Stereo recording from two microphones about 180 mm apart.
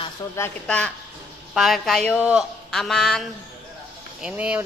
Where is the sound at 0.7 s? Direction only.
5° left (ahead or behind).